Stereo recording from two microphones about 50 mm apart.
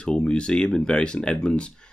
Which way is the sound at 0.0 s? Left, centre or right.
Centre.